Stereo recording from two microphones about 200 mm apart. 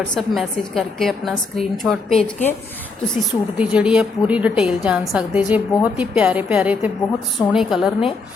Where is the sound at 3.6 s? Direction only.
5° right (ahead or behind).